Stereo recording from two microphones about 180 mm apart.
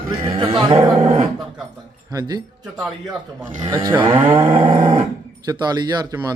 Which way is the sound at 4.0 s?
30° right (ahead or behind).